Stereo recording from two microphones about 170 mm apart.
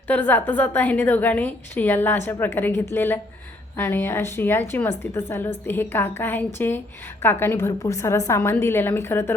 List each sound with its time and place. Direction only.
0.1 s a woman's voice: 10° left (ahead or behind)